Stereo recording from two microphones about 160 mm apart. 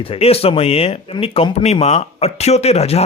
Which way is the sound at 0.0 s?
35° left (ahead or behind).